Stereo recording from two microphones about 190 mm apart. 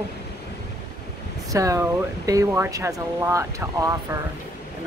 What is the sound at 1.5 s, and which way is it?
Speech, 15° right (ahead or behind).